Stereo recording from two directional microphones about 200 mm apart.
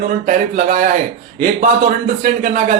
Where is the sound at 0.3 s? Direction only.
40° right (ahead or behind).